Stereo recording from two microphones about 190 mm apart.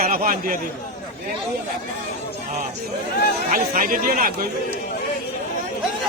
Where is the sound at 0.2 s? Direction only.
45° right (ahead or behind).